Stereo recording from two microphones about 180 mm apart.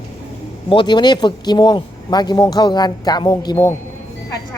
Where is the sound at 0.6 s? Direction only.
25° left (ahead or behind).